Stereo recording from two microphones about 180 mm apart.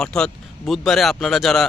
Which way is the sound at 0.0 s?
5° left (ahead or behind).